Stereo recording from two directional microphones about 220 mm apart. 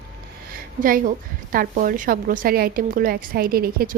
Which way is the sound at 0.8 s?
40° right (ahead or behind).